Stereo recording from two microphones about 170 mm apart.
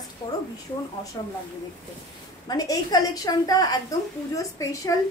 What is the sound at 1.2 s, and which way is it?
Speech, 25° left (ahead or behind).